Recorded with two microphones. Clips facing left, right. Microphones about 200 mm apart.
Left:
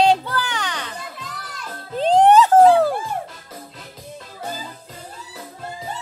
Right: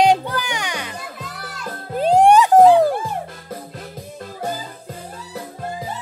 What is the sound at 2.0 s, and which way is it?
Music, 10° right (ahead or behind).